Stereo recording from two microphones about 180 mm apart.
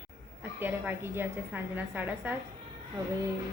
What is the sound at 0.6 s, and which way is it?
A woman's voice, 10° right (ahead or behind).